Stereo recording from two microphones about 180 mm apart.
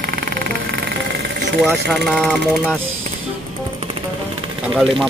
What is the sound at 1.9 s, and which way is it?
Speech, centre (ahead or behind).